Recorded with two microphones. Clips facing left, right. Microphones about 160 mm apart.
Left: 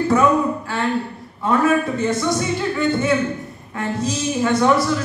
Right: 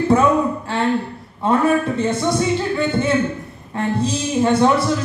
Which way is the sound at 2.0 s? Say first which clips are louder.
Right 1 dB; 30° right (ahead or behind).